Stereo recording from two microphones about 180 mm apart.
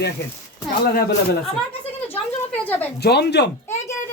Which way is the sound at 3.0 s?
65° left (ahead or behind).